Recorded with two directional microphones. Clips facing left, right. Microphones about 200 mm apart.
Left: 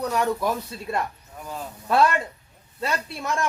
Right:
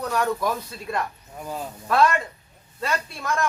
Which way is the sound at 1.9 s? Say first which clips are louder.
Even; 30° left (ahead or behind).